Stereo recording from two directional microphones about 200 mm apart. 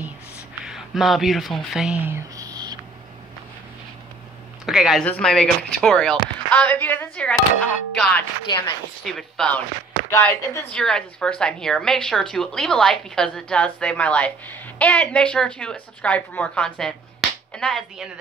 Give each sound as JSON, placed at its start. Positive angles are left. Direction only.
{"t": 0.7, "sound": "speech", "side_deg": 0}
{"t": 2.0, "sound": "a sound", "side_deg": -15}
{"t": 4.6, "sound": "speech", "side_deg": 0}